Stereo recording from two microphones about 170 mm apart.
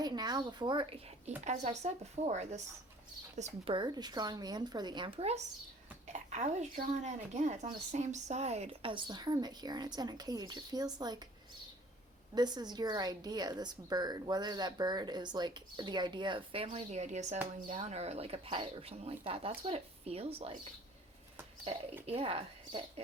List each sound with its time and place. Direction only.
0.0 s speech: 25° right (ahead or behind)
1.5 s speech: 40° right (ahead or behind)
3.8 s speech: 25° right (ahead or behind)
12.3 s speech: 25° right (ahead or behind)
22.0 s speech: 35° right (ahead or behind)